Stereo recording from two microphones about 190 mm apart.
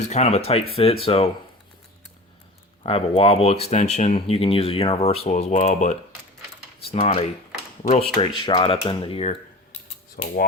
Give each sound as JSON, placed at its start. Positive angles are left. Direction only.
{"t": 0.1, "sound": "speech", "side_deg": 35}
{"t": 2.8, "sound": "speech", "side_deg": 30}
{"t": 10.2, "sound": "speech", "side_deg": 50}